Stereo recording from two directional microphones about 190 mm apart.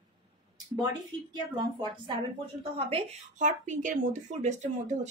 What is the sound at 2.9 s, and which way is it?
Speech, 35° right (ahead or behind).